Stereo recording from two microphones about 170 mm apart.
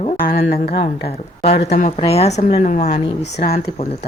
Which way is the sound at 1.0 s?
35° left (ahead or behind).